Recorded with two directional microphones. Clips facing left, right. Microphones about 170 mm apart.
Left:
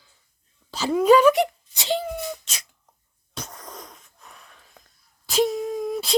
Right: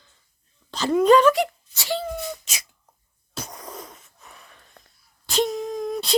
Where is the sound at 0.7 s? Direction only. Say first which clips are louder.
Even; 5° left (ahead or behind).